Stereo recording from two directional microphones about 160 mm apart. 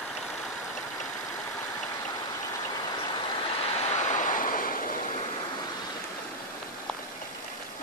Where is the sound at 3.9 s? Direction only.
50° left (ahead or behind).